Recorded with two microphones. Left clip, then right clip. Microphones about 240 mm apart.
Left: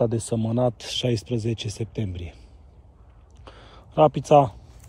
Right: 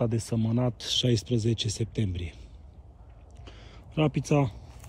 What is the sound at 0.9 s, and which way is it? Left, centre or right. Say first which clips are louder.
Speech: left 1 dB; centre.